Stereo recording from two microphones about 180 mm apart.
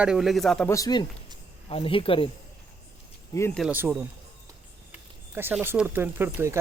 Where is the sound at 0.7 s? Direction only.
20° left (ahead or behind).